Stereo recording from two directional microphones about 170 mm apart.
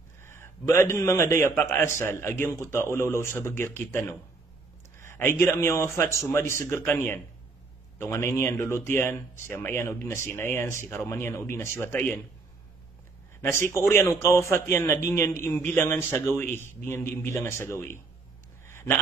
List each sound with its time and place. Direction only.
0.2 s speech: 15° left (ahead or behind)
13.4 s speech: 15° left (ahead or behind)